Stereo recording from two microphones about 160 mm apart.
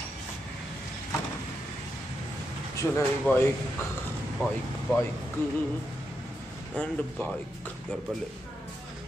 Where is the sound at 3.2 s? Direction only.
10° left (ahead or behind).